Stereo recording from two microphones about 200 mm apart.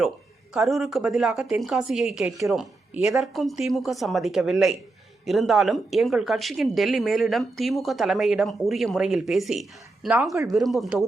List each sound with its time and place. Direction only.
0.5 s speech: centre (ahead or behind)